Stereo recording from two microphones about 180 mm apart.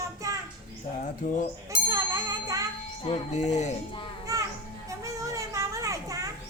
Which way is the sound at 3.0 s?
40° left (ahead or behind).